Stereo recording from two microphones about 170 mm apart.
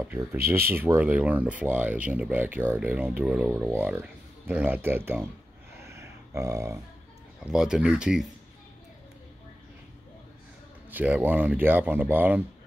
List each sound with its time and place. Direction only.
0.1 s speech: 15° right (ahead or behind)
5.9 s a sound: 15° right (ahead or behind)
7.5 s speech: 5° right (ahead or behind)
10.9 s speech: 10° right (ahead or behind)